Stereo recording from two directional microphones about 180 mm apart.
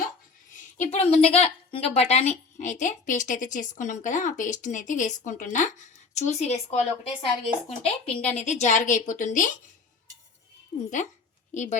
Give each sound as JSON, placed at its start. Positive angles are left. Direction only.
{"t": 0.5, "sound": "a woman's voice", "side_deg": 40}
{"t": 10.7, "sound": "speech", "side_deg": 25}
{"t": 11.5, "sound": "a woman's voice", "side_deg": 40}